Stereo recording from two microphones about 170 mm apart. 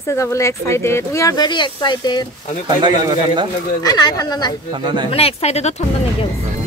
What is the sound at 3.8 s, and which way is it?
Speech, 25° left (ahead or behind).